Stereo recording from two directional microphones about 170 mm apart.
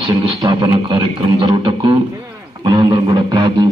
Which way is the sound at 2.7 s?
25° right (ahead or behind).